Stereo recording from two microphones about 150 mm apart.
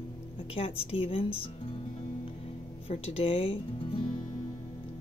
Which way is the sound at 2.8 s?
40° left (ahead or behind).